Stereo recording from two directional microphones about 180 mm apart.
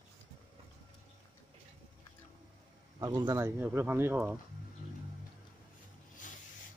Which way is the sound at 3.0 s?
20° right (ahead or behind).